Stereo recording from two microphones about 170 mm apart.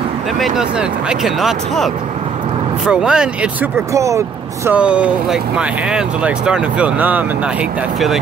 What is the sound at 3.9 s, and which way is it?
Speech, 20° right (ahead or behind).